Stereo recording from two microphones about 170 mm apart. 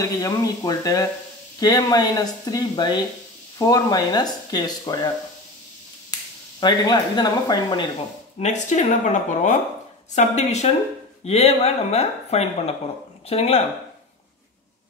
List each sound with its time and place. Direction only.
0.0 s speech: 20° left (ahead or behind)
6.6 s speech: 25° left (ahead or behind)
8.4 s a woman's voice: 45° left (ahead or behind)